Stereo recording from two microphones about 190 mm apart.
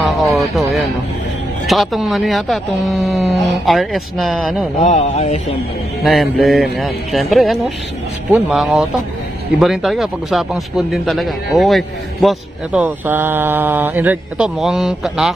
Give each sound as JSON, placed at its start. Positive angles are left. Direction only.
{"t": 0.0, "sound": "vehicle", "side_deg": 0}
{"t": 1.7, "sound": "speech", "side_deg": 0}
{"t": 4.8, "sound": "speech", "side_deg": 35}
{"t": 6.0, "sound": "speech", "side_deg": 0}
{"t": 12.8, "sound": "speech", "side_deg": -10}